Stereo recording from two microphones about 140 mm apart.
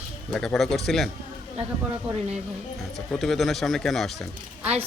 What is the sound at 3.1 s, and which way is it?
Speech, 5° left (ahead or behind).